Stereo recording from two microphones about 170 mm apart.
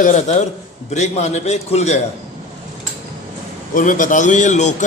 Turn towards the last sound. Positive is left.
turn(degrees=45)  # may be behind; listen again after turning